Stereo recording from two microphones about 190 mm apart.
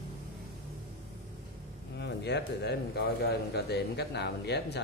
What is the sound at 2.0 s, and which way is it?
Speech, 60° left (ahead or behind).